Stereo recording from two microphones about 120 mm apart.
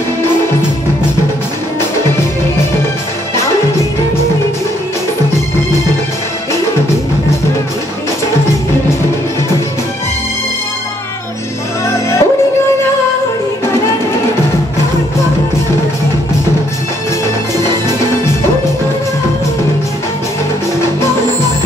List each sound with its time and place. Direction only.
11.9 s music: 25° left (ahead or behind)